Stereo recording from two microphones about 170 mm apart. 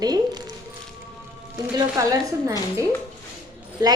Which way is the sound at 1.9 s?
20° right (ahead or behind).